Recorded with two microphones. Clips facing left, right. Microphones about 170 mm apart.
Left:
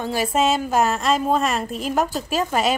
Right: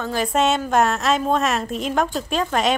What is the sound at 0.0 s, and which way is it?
A woman's voice, 10° left (ahead or behind).